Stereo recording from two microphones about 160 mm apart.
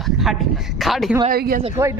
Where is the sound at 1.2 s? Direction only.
70° right (ahead or behind).